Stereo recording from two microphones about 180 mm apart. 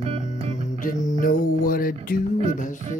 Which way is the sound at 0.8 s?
45° left (ahead or behind).